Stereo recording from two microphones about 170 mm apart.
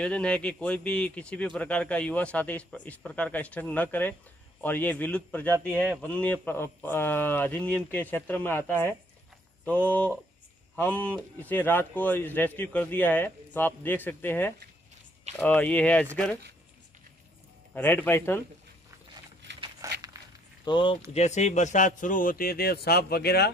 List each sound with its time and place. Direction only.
0.0 s a man's voice: 5° left (ahead or behind)
17.7 s a man's voice: 10° left (ahead or behind)
19.8 s crumpling: 20° right (ahead or behind)
20.6 s speech: 30° left (ahead or behind)
21.1 s speech: 40° left (ahead or behind); by 23.5 s 70° left (ahead or behind)